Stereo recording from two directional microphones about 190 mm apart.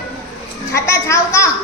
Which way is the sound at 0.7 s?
15° left (ahead or behind).